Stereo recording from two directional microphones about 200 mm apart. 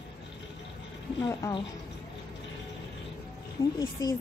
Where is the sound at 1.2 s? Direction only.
20° left (ahead or behind).